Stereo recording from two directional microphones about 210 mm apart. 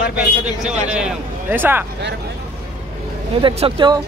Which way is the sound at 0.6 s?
5° right (ahead or behind).